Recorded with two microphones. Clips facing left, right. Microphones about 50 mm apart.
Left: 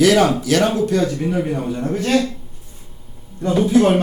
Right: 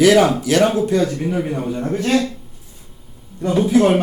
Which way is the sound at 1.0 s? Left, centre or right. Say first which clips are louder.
Even; centre.